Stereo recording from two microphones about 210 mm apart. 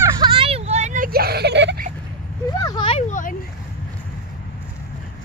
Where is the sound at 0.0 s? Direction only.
20° right (ahead or behind); by 1.9 s 55° right (ahead or behind).